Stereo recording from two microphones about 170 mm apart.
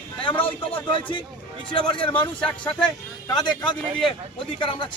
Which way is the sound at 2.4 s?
5° left (ahead or behind).